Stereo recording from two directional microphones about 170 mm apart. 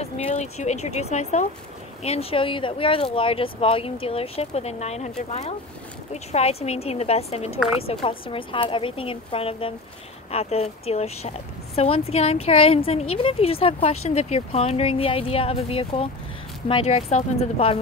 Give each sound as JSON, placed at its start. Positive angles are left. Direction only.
{"t": 0.0, "sound": "a woman's voice", "side_deg": 40}